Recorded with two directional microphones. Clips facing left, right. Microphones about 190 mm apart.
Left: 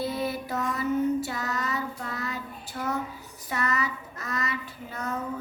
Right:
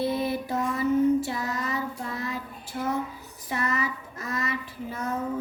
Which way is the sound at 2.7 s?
30° right (ahead or behind).